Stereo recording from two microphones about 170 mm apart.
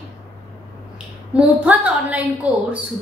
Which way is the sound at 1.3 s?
5° right (ahead or behind).